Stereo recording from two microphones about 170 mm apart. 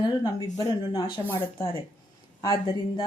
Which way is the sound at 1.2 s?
15° left (ahead or behind).